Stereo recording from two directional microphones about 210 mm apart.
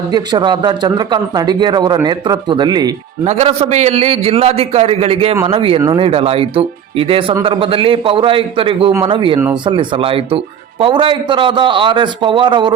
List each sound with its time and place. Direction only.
0.1 s a man's voice: 20° right (ahead or behind)
3.2 s a man's voice: 30° right (ahead or behind)